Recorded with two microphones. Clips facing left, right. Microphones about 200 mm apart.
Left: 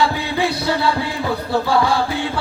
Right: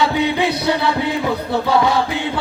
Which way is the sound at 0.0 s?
20° right (ahead or behind).